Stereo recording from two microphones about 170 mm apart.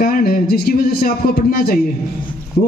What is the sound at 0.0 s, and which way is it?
A man's voice, 60° left (ahead or behind).